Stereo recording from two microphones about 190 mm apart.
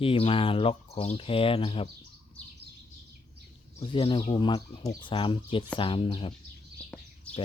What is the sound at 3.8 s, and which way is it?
Speech, 25° left (ahead or behind).